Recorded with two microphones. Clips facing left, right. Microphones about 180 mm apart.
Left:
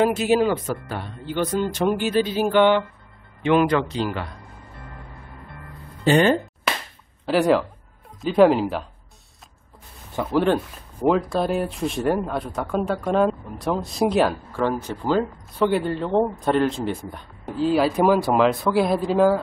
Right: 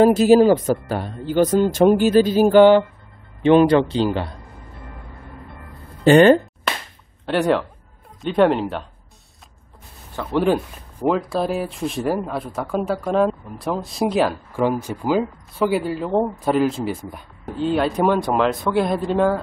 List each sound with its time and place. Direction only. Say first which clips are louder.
0.0 s speech: right 7 dB; 35° right (ahead or behind)
6.0 s speech: right 6 dB; 65° right (ahead or behind)
7.2 s speech: left 1 dB; centre (ahead or behind)
10.3 s speech: right 2 dB; 5° right (ahead or behind)
14.5 s speech: right 3 dB; 10° right (ahead or behind)